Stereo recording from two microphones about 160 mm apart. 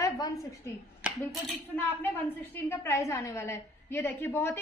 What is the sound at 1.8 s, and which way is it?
A woman's voice, 10° left (ahead or behind).